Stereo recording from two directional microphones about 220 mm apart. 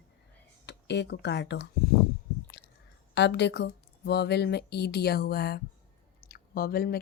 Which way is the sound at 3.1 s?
50° left (ahead or behind).